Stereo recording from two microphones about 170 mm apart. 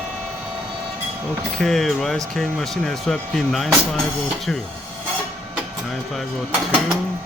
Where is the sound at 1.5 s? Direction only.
Centre (ahead or behind).